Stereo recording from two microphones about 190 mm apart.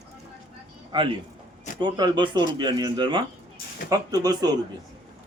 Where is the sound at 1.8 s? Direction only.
25° right (ahead or behind).